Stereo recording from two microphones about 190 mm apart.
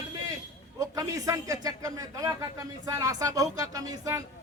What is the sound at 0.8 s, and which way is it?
A man's voice, 20° right (ahead or behind).